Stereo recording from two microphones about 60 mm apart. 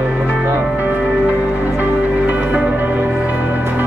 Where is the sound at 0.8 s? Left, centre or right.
Centre.